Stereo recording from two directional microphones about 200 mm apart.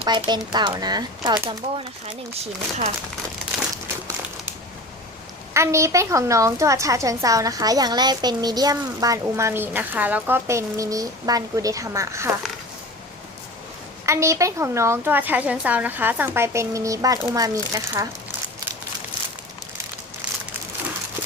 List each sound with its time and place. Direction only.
0.0 s speech: 20° right (ahead or behind)
2.4 s speech: 35° right (ahead or behind)
5.5 s a woman's voice: 15° right (ahead or behind)
14.0 s a woman's voice: 15° right (ahead or behind)